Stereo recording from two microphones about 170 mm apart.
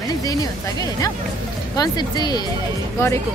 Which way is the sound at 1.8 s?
25° left (ahead or behind).